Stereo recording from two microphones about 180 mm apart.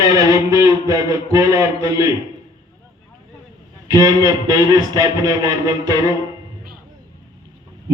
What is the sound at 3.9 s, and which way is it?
Speech, 20° right (ahead or behind).